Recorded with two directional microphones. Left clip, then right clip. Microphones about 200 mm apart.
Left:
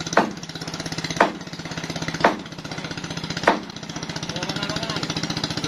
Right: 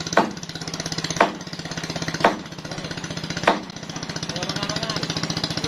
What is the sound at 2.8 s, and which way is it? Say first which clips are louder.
Jackhammer: even; 20° right (ahead or behind).